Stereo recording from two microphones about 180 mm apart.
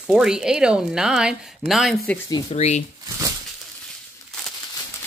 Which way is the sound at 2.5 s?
40° left (ahead or behind).